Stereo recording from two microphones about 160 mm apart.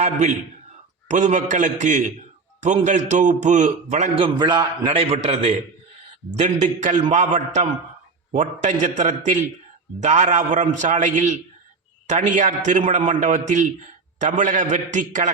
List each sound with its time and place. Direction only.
0.0 s a man's voice: 45° right (ahead or behind)
4.2 s a man's voice: 30° right (ahead or behind); by 15.3 s 50° right (ahead or behind)